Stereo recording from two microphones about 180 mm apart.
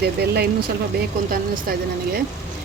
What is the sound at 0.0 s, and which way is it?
A woman's voice, 65° right (ahead or behind).